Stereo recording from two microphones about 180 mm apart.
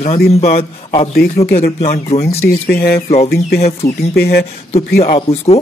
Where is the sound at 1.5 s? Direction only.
50° left (ahead or behind).